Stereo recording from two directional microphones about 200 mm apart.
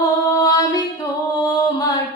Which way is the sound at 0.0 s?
20° left (ahead or behind).